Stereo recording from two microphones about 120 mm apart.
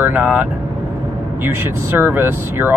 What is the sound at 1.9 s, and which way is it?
Speech, 15° right (ahead or behind).